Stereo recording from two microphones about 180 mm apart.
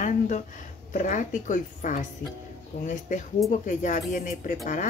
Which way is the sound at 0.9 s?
45° left (ahead or behind).